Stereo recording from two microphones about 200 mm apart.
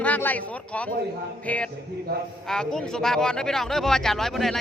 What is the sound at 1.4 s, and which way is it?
Music, 5° left (ahead or behind).